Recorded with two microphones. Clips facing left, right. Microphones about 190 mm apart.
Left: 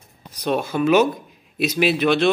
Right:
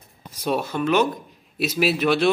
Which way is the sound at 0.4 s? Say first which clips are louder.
Left 3 dB; 5° right (ahead or behind).